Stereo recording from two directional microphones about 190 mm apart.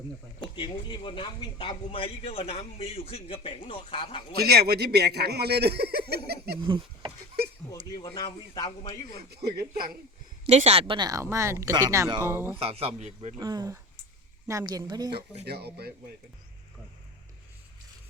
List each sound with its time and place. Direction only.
0.5 s a man's voice: 25° left (ahead or behind)
4.4 s a man's voice: 55° right (ahead or behind)
6.6 s speech: 25° right (ahead or behind)
8.0 s a man's voice: 20° left (ahead or behind)
9.3 s a man's voice: 55° right (ahead or behind)
10.4 s speech: 35° right (ahead or behind); by 12.5 s 15° right (ahead or behind)
12.5 s a man's voice: 30° right (ahead or behind)
13.4 s speech: 20° right (ahead or behind)
15.4 s a man's voice: 60° right (ahead or behind)